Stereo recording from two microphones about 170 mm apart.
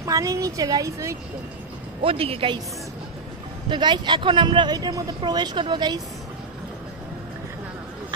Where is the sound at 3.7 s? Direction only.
25° right (ahead or behind).